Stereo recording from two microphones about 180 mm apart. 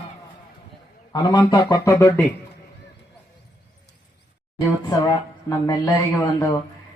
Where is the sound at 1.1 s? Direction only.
20° left (ahead or behind).